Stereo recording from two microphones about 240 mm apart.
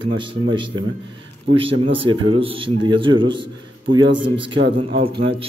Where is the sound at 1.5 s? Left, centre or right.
Right.